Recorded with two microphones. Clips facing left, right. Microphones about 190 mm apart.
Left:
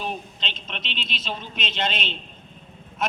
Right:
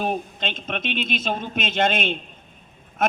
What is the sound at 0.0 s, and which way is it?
A man's voice, 50° right (ahead or behind).